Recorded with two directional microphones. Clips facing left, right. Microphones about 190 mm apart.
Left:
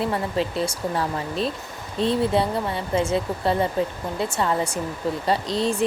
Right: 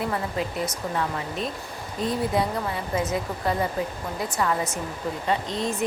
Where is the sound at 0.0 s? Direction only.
30° left (ahead or behind).